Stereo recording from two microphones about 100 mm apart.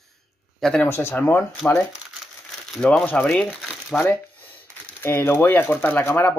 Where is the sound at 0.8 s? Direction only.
25° left (ahead or behind).